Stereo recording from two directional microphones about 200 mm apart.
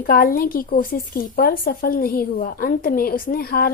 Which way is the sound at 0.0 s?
45° left (ahead or behind).